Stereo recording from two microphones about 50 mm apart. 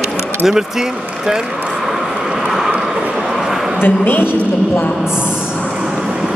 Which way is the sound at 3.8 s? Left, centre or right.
Left.